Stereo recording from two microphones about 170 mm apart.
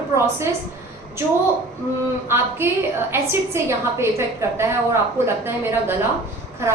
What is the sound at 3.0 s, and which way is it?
A woman's voice, 15° right (ahead or behind).